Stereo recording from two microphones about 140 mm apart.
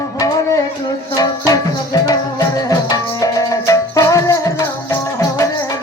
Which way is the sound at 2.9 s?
25° left (ahead or behind).